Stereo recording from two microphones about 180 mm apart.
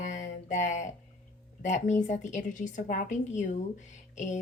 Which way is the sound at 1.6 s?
40° left (ahead or behind).